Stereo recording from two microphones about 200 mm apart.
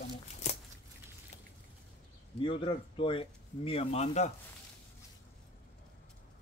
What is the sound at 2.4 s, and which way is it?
Speech, 25° left (ahead or behind).